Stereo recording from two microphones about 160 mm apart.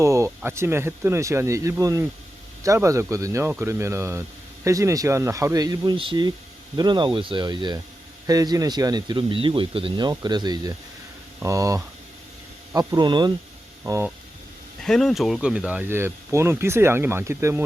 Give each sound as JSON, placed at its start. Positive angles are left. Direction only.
{"t": 0.0, "sound": "speech", "side_deg": -20}
{"t": 14.8, "sound": "speech", "side_deg": 5}